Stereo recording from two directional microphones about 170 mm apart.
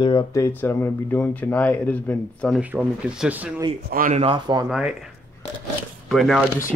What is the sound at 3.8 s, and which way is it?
Speech, 55° right (ahead or behind).